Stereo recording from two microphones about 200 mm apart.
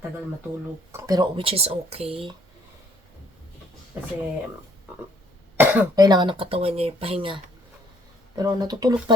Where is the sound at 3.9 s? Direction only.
10° right (ahead or behind).